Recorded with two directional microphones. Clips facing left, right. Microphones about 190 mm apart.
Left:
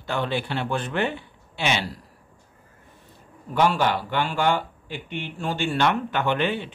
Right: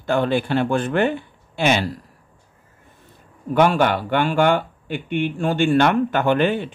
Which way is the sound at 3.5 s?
55° right (ahead or behind).